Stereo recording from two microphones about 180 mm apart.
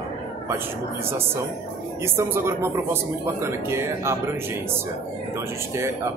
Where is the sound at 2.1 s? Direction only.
15° right (ahead or behind).